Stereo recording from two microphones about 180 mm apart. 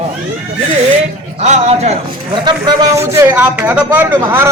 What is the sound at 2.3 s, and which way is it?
Speech, 25° right (ahead or behind).